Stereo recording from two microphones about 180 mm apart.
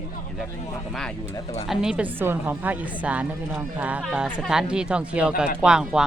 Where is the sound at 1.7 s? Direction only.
5° right (ahead or behind).